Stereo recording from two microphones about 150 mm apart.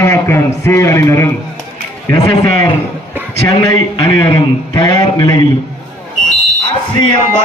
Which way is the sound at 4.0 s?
25° left (ahead or behind).